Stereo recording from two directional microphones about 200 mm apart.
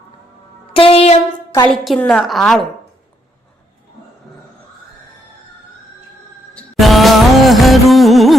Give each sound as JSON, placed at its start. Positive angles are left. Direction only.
{"t": 0.7, "sound": "a sound", "side_deg": 30}
{"t": 1.6, "sound": "a woman's voice", "side_deg": 5}
{"t": 6.5, "sound": "music", "side_deg": 0}